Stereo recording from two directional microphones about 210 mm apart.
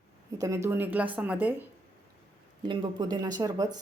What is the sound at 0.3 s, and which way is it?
Speech, 15° right (ahead or behind).